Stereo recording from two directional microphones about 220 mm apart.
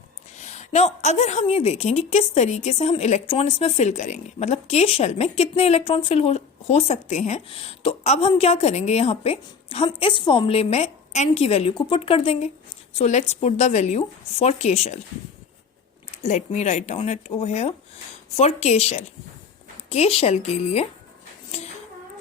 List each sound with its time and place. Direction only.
0.3 s a woman's voice: 30° left (ahead or behind)
16.1 s a woman's voice: 30° left (ahead or behind)